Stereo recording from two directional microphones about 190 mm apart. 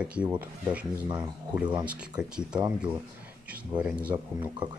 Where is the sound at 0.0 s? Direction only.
5° right (ahead or behind).